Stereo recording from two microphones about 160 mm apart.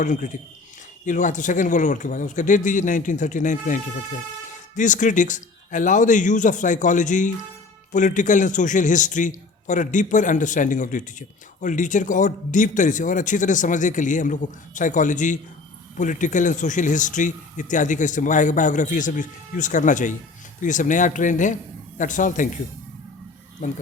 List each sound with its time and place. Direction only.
0.0 s speech: 50° left (ahead or behind)
23.6 s speech: 50° left (ahead or behind)